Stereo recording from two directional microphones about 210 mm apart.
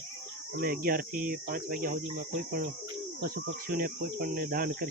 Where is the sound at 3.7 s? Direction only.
45° right (ahead or behind).